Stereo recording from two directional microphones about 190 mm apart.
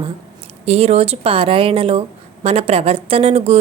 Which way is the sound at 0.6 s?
35° right (ahead or behind).